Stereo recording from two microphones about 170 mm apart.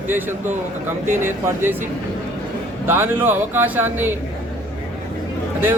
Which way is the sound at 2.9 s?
10° right (ahead or behind).